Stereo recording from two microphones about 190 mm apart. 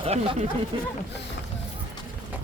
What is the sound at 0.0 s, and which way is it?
Speech, 30° right (ahead or behind).